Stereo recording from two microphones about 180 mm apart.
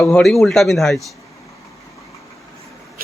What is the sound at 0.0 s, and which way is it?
Speech, centre (ahead or behind).